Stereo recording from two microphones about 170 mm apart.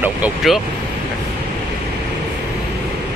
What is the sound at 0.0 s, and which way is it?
Speech, 5° right (ahead or behind).